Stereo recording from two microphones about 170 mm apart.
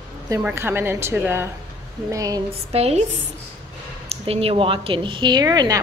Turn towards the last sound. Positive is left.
turn(degrees=-25)  # may be behind; listen again after turning